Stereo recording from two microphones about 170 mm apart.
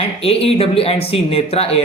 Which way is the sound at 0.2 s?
35° left (ahead or behind).